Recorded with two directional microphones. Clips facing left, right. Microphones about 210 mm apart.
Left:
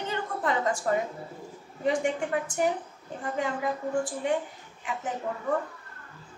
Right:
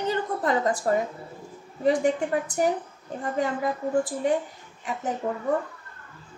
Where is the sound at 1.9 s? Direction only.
35° right (ahead or behind).